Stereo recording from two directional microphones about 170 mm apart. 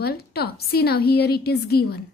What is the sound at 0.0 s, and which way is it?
A woman's voice, 70° left (ahead or behind).